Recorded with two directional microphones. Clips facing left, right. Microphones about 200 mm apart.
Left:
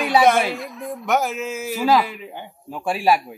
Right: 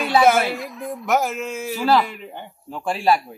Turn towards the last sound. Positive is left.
turn(degrees=10)  # may be behind; listen again after turning